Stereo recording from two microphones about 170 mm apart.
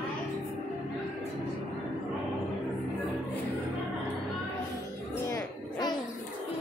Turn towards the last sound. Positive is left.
turn(degrees=20)  # may be behind; listen again after turning